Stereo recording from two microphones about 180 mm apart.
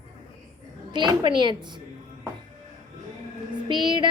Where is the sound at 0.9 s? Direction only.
25° right (ahead or behind).